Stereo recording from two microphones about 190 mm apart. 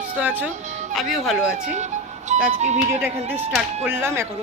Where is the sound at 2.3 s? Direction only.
40° right (ahead or behind).